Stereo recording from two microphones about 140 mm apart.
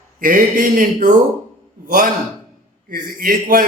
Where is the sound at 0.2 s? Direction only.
75° right (ahead or behind).